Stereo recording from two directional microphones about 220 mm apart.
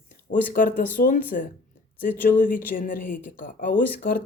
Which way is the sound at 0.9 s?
40° left (ahead or behind).